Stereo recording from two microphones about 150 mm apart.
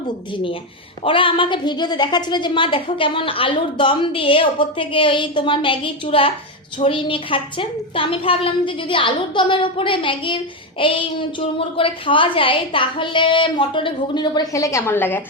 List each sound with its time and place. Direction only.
1.0 s a woman's voice: 35° left (ahead or behind); by 15.2 s 15° left (ahead or behind)